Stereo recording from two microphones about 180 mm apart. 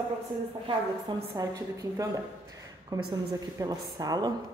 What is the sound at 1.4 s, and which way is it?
A woman's voice, 20° right (ahead or behind).